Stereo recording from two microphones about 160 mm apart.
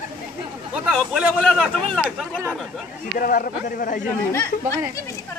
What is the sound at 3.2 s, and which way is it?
Speech, 60° left (ahead or behind).